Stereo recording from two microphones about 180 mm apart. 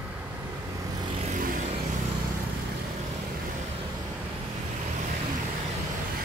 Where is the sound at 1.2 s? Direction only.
45° right (ahead or behind).